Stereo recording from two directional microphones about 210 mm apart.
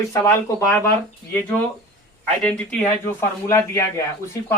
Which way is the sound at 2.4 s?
5° left (ahead or behind).